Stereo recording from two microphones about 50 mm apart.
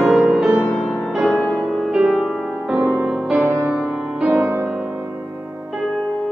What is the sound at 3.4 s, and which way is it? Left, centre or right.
Music, right.